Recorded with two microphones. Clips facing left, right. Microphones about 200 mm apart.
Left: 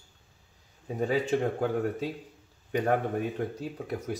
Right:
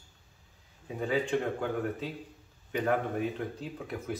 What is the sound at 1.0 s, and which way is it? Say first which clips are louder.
Speech: left 3 dB; 40° left (ahead or behind).